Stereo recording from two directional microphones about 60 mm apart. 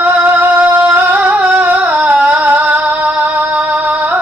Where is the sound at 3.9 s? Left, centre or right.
Right.